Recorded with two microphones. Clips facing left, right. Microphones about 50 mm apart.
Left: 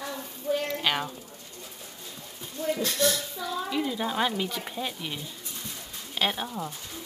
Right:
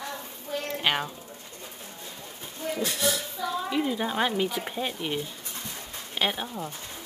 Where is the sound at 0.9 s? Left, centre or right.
Centre.